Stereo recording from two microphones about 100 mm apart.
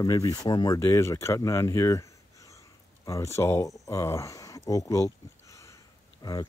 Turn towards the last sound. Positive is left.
turn(degrees=45)  # may be behind; listen again after turning